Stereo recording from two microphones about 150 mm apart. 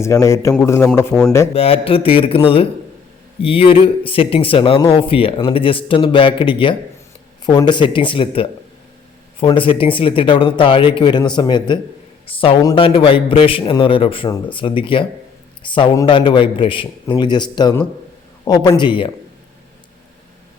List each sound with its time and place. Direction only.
0.0 s a man's voice: 20° left (ahead or behind)
1.5 s a man's voice: 40° left (ahead or behind)